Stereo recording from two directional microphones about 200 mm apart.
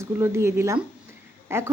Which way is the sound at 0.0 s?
15° right (ahead or behind).